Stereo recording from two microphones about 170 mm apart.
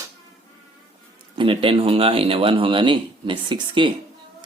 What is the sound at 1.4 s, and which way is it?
A man's voice, 30° right (ahead or behind).